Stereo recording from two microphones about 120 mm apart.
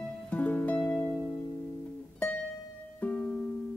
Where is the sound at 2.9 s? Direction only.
15° left (ahead or behind).